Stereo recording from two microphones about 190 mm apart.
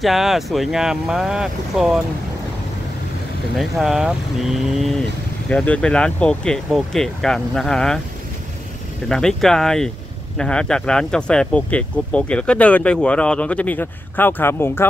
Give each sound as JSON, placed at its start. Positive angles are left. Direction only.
{"t": 0.0, "sound": "speech", "side_deg": 0}
{"t": 3.5, "sound": "speech", "side_deg": 0}
{"t": 9.1, "sound": "speech", "side_deg": 5}